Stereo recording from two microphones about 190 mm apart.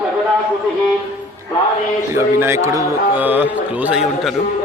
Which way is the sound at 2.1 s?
10° right (ahead or behind).